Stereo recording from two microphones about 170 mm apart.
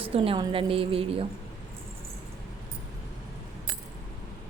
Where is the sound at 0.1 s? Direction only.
30° right (ahead or behind).